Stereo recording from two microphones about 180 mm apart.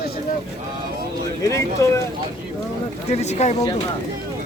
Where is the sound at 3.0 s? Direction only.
35° left (ahead or behind).